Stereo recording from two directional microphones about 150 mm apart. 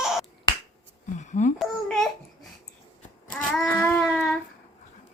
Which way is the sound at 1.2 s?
55° left (ahead or behind).